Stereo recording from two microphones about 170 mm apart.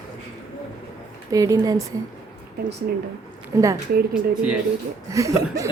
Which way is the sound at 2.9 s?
65° right (ahead or behind).